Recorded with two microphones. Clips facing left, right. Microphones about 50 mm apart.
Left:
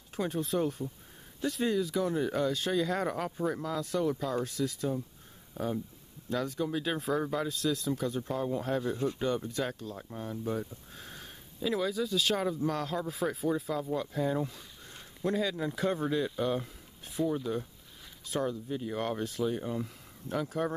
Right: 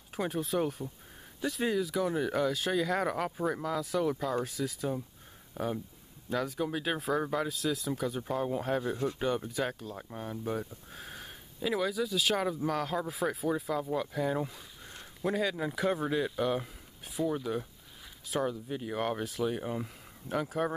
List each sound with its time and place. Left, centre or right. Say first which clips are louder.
0.1 s speech: even; centre
17.3 s speech: even; centre